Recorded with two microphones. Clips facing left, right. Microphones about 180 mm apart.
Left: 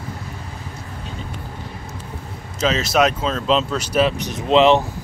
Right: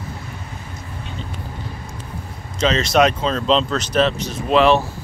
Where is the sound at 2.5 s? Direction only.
5° left (ahead or behind).